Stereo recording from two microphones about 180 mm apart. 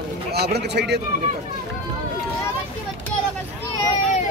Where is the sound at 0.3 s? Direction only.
65° right (ahead or behind).